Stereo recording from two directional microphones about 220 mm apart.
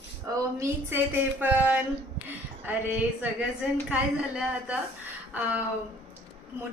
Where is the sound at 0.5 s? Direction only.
10° right (ahead or behind).